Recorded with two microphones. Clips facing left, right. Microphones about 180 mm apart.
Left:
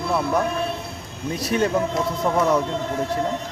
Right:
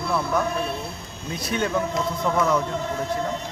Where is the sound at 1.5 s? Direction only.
35° left (ahead or behind).